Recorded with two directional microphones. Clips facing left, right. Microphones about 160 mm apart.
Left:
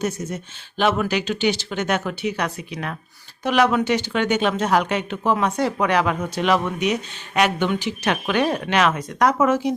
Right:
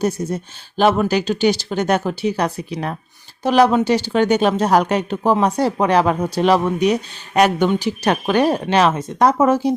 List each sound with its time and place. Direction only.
0.0 s speech: 35° right (ahead or behind)